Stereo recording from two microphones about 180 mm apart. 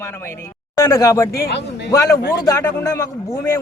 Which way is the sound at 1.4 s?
70° left (ahead or behind).